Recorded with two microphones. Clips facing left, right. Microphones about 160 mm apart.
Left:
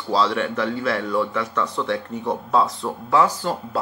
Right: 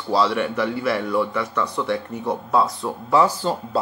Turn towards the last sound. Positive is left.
turn(degrees=-15)  # may be behind; listen again after turning